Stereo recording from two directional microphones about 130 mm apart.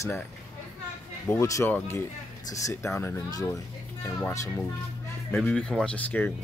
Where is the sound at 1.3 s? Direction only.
20° left (ahead or behind).